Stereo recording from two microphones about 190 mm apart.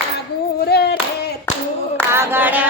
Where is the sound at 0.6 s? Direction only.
60° left (ahead or behind).